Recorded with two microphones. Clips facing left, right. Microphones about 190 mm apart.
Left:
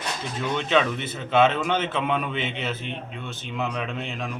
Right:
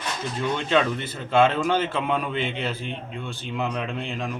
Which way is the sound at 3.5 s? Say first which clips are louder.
Right 1 dB; 10° right (ahead or behind).